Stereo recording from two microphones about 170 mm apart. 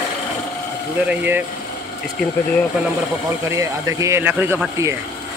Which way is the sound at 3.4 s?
20° right (ahead or behind).